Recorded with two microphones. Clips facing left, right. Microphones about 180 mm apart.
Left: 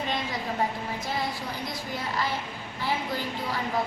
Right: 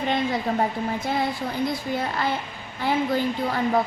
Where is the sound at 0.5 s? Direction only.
55° right (ahead or behind).